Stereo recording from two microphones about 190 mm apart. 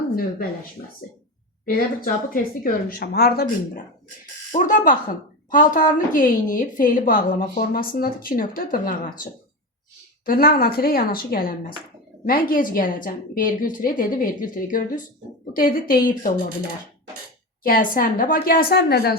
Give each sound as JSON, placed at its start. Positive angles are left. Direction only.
{"t": 0.8, "sound": "speech", "side_deg": 40}
{"t": 1.6, "sound": "speech", "side_deg": 50}
{"t": 4.5, "sound": "speech", "side_deg": 45}
{"t": 17.6, "sound": "speech", "side_deg": 50}